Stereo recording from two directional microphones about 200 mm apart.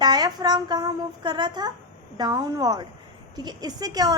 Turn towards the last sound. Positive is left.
turn(degrees=-20)  # may be behind; listen again after turning